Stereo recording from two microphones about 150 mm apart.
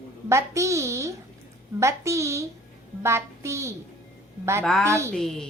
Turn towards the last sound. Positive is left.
turn(degrees=0)  # may be behind; listen again after turning